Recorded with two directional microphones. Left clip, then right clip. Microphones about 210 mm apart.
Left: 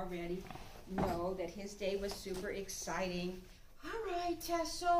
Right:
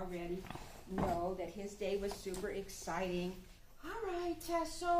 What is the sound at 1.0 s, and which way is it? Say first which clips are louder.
Speech: even; 15° left (ahead or behind).